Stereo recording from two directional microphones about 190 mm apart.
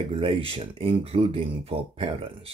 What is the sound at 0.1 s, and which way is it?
Speech, 30° right (ahead or behind).